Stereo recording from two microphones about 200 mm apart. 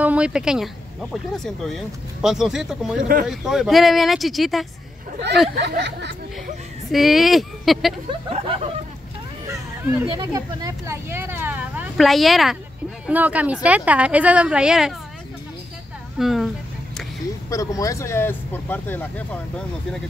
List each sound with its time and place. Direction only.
0.0 s speech: 5° right (ahead or behind)
3.0 s speech: 45° right (ahead or behind)
3.3 s speech: centre (ahead or behind)
5.6 s speech: 60° right (ahead or behind)
6.9 s speech: centre (ahead or behind)
8.3 s speech: 30° right (ahead or behind)
10.0 s speech: 20° right (ahead or behind); by 15.0 s 5° right (ahead or behind)
16.2 s speech: centre (ahead or behind)
17.5 s speech: 15° left (ahead or behind)